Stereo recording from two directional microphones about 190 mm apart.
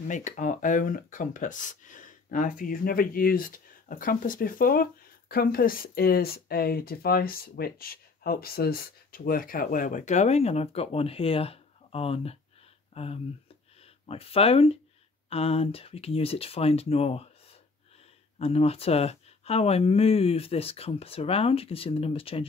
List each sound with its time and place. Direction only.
0.1 s speech: 40° left (ahead or behind)